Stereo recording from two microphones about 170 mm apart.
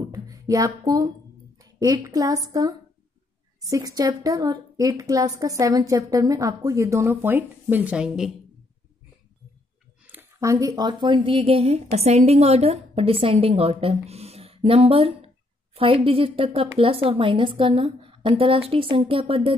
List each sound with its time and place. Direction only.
0.1 s a woman's voice: 20° right (ahead or behind)
3.6 s a woman's voice: 20° right (ahead or behind)
10.0 s a woman's voice: 15° right (ahead or behind); by 19.5 s 30° right (ahead or behind)